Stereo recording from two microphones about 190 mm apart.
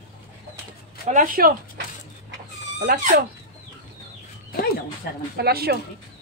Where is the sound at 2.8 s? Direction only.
45° right (ahead or behind).